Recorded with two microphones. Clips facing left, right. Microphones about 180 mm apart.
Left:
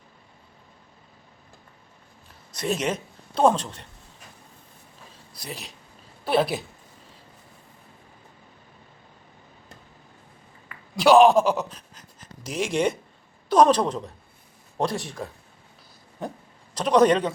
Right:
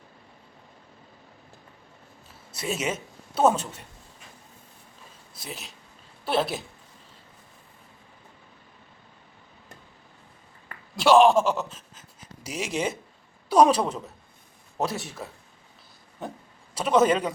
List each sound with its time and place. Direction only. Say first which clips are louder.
2.5 s a woman's voice: left 3 dB; 5° right (ahead or behind)
5.4 s a man's voice: left 2 dB; centre (ahead or behind)
10.9 s a woman's voice: left 2 dB; centre (ahead or behind)